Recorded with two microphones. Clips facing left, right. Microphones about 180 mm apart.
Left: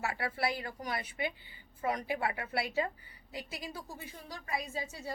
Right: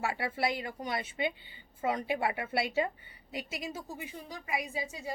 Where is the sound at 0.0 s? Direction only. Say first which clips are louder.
Right 2 dB; 25° right (ahead or behind).